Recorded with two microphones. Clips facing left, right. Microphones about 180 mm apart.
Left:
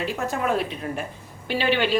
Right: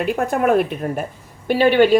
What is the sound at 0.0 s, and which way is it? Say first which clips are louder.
A woman's voice: right 7 dB; 55° right (ahead or behind).